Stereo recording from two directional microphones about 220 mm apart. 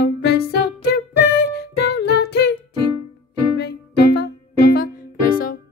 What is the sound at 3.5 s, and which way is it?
Music, 45° left (ahead or behind).